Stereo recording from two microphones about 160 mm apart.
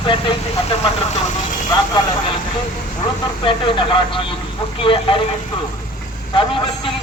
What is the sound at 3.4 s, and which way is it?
Speech, 30° left (ahead or behind).